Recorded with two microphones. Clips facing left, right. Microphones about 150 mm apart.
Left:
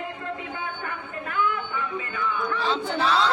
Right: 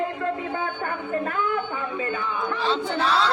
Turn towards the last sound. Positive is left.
turn(degrees=0)  # may be behind; listen again after turning